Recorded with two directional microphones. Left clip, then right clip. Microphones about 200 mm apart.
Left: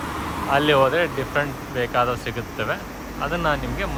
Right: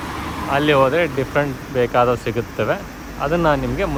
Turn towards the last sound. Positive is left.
turn(degrees=10)  # may be behind; listen again after turning